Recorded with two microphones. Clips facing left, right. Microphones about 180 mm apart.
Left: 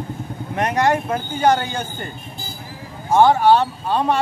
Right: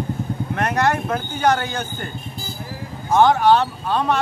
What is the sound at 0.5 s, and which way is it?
Speech, 10° left (ahead or behind).